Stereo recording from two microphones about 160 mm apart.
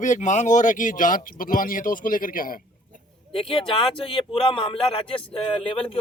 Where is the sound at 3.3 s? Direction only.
35° left (ahead or behind).